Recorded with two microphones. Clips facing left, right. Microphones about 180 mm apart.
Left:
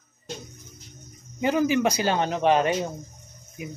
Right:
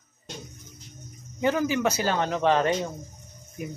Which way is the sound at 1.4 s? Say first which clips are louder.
Left 2 dB; 20° left (ahead or behind).